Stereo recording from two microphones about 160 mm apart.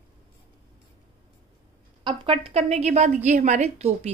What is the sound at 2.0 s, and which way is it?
A woman's voice, 35° right (ahead or behind).